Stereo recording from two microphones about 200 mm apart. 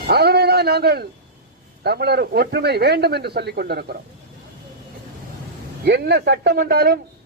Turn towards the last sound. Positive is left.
turn(degrees=-50)  # may be behind; listen again after turning